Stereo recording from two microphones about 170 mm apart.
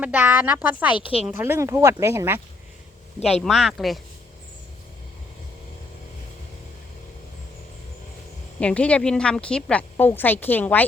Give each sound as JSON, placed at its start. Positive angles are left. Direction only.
{"t": 0.0, "sound": "speech", "side_deg": -10}
{"t": 3.4, "sound": "speech", "side_deg": 0}
{"t": 8.5, "sound": "a woman's voice", "side_deg": 5}